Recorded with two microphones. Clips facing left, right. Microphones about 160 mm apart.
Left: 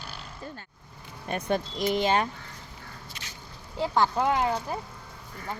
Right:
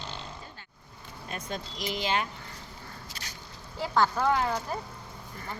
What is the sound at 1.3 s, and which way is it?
Speech, 60° left (ahead or behind).